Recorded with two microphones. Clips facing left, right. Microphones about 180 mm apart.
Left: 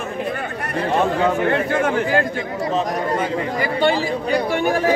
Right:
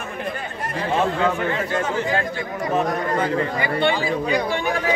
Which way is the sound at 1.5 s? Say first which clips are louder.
Left 5 dB; 55° left (ahead or behind).